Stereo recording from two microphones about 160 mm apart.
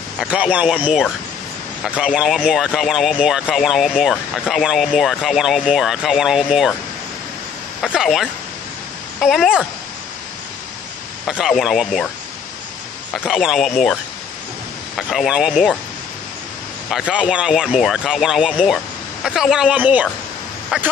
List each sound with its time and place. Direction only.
0.2 s speech: 10° right (ahead or behind)
7.8 s speech: centre (ahead or behind)
11.2 s speech: centre (ahead or behind)
13.1 s speech: centre (ahead or behind)
15.0 s speech: centre (ahead or behind)
16.9 s speech: 5° right (ahead or behind)